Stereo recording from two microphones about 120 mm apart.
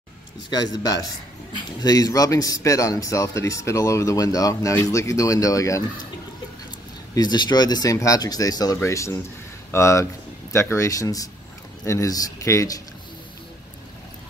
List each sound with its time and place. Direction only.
0.5 s a man's voice: 35° left (ahead or behind)
7.2 s a man's voice: 35° left (ahead or behind)